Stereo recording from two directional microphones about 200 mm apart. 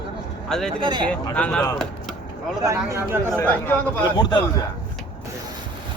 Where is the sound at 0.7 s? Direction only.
25° right (ahead or behind).